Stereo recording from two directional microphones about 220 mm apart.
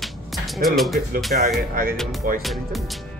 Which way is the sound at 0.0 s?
Centre (ahead or behind).